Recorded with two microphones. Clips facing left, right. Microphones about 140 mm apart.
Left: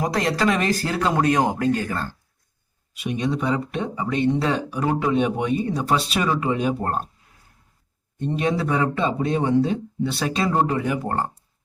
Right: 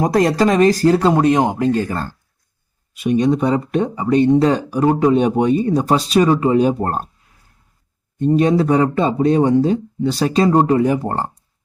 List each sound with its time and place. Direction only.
0.0 s speech: 45° right (ahead or behind); by 1.8 s 25° right (ahead or behind)
2.9 s speech: 45° right (ahead or behind)
8.2 s speech: 40° right (ahead or behind)